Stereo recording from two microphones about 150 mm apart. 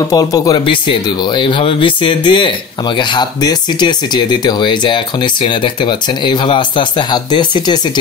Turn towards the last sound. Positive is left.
turn(degrees=30)  # may be behind; listen again after turning